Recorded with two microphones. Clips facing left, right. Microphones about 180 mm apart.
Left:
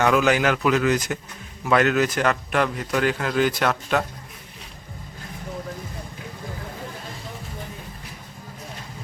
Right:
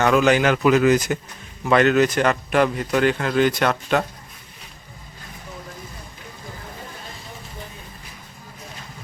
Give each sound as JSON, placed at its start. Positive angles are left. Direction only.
{"t": 0.0, "sound": "a man's voice", "side_deg": 5}